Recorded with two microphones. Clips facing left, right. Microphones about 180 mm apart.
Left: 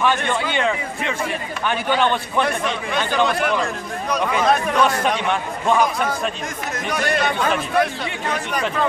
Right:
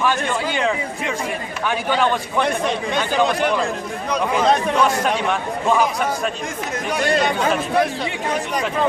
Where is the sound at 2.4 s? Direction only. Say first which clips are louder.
Right 2 dB; 25° right (ahead or behind).